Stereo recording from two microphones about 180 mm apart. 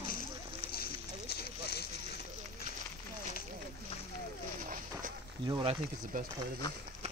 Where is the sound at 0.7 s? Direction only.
60° left (ahead or behind).